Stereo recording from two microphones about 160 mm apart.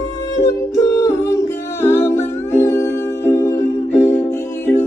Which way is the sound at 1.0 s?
15° left (ahead or behind).